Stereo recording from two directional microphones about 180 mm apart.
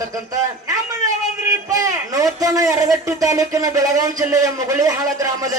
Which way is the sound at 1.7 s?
20° right (ahead or behind).